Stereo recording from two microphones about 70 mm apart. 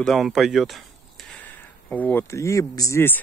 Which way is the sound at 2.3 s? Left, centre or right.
Left.